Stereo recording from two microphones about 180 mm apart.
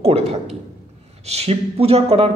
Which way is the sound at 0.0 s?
35° right (ahead or behind).